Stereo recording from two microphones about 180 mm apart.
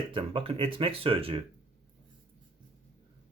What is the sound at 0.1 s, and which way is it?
Speech, 30° right (ahead or behind).